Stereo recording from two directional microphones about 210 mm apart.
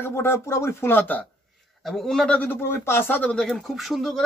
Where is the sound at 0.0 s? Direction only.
10° left (ahead or behind).